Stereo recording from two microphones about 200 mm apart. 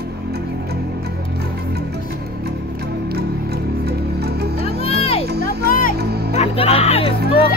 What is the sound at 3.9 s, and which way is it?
Music, 55° right (ahead or behind).